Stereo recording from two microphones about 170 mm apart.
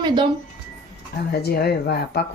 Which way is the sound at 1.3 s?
70° left (ahead or behind).